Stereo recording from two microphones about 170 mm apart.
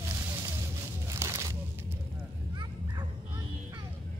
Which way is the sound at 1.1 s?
15° right (ahead or behind).